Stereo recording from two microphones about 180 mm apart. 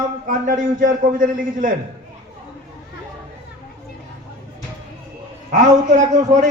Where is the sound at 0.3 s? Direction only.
45° right (ahead or behind).